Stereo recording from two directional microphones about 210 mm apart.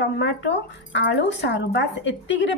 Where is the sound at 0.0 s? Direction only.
55° left (ahead or behind).